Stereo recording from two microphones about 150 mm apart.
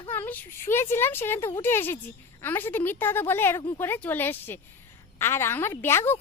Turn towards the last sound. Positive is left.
turn(degrees=15)  # may be behind; listen again after turning